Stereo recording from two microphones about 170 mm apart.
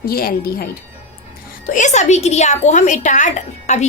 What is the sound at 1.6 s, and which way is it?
A woman's voice, 45° left (ahead or behind).